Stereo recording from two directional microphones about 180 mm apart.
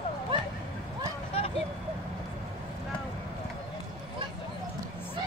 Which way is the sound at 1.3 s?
35° left (ahead or behind).